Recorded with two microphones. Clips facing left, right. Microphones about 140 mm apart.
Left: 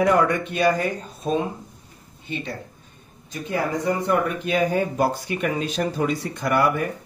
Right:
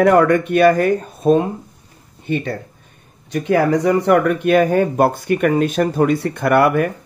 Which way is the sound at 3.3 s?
75° right (ahead or behind).